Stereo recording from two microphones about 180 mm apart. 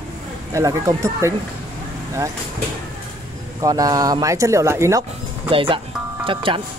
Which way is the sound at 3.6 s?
20° right (ahead or behind).